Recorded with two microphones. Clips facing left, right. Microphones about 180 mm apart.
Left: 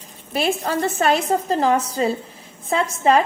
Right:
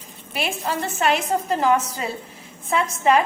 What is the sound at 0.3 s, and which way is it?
A woman's voice, 40° left (ahead or behind).